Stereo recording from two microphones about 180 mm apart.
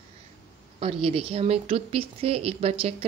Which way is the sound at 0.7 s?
30° right (ahead or behind).